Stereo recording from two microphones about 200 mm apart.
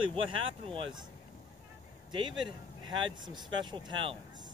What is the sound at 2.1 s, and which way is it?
Speech, 25° right (ahead or behind).